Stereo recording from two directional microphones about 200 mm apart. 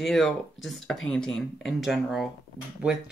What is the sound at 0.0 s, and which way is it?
Speech, centre (ahead or behind).